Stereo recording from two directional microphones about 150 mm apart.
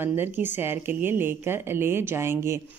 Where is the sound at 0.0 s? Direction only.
15° right (ahead or behind).